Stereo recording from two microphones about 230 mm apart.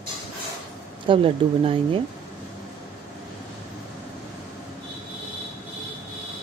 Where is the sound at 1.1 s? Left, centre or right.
Right.